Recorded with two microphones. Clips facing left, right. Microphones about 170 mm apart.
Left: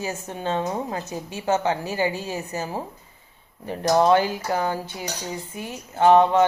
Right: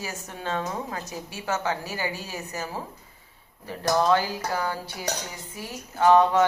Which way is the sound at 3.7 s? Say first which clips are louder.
Left 4 dB; 20° left (ahead or behind).